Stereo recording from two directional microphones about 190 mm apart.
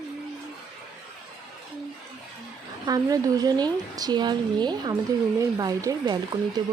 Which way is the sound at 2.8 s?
20° right (ahead or behind).